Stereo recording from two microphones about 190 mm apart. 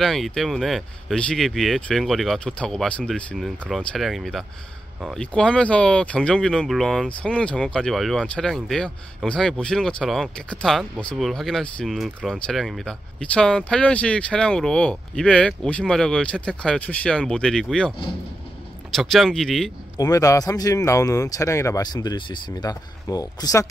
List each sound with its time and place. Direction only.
0.0 s speech: centre (ahead or behind)
18.9 s speech: centre (ahead or behind)
20.0 s speech: 20° left (ahead or behind)